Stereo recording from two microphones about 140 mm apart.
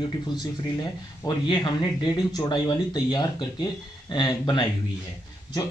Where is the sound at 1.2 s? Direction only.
30° left (ahead or behind).